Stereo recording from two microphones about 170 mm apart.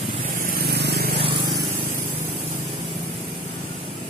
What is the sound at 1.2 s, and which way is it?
Vehicle, 30° right (ahead or behind).